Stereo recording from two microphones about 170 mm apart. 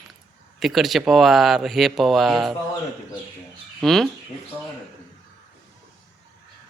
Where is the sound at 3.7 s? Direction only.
Centre (ahead or behind).